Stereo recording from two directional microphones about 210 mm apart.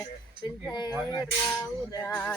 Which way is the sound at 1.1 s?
20° left (ahead or behind).